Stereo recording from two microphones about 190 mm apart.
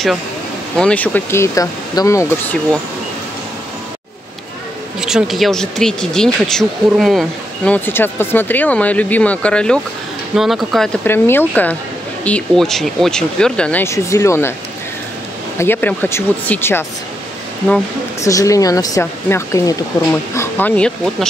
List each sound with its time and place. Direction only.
0.7 s speech: 5° left (ahead or behind)
5.0 s speech: centre (ahead or behind); by 14.5 s 15° left (ahead or behind)
15.5 s speech: 10° left (ahead or behind)
18.2 s speech: 15° left (ahead or behind)